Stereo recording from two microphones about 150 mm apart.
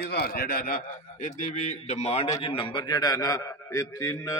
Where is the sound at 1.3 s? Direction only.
55° left (ahead or behind); by 4.3 s 20° left (ahead or behind).